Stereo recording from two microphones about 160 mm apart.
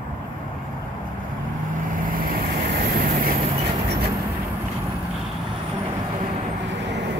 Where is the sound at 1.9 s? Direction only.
75° right (ahead or behind).